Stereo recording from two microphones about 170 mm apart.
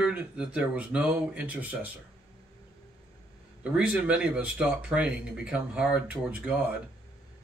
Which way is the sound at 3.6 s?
5° right (ahead or behind).